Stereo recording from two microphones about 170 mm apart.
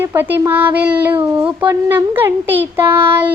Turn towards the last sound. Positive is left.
turn(degrees=-10)  # may be behind; listen again after turning